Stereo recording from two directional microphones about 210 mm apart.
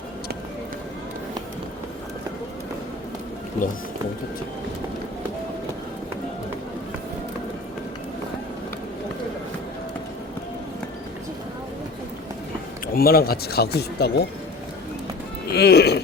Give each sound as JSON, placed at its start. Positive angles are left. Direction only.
{"t": 12.9, "sound": "speech", "side_deg": 45}
{"t": 15.4, "sound": "speech", "side_deg": 50}